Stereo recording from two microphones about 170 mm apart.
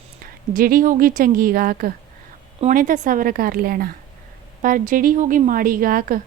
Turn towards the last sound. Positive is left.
turn(degrees=-55)  # may be behind; listen again after turning